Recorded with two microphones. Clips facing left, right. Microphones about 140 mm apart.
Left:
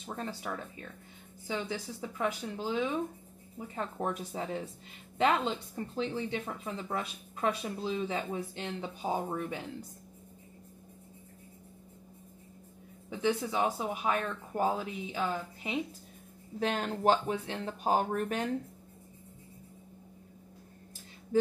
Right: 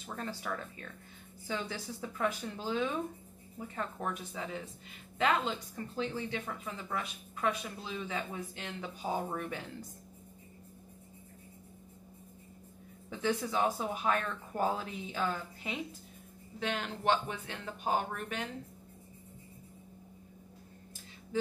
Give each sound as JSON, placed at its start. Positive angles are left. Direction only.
{"t": 0.0, "sound": "speech", "side_deg": 20}
{"t": 4.0, "sound": "speech", "side_deg": 35}
{"t": 13.1, "sound": "speech", "side_deg": 15}
{"t": 16.5, "sound": "speech", "side_deg": 40}